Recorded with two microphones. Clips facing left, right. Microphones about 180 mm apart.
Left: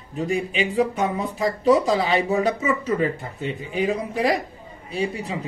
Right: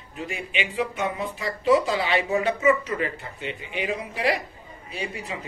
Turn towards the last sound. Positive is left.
turn(degrees=35)  # may be behind; listen again after turning